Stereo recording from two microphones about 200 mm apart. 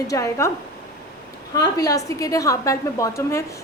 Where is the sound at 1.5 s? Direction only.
15° left (ahead or behind).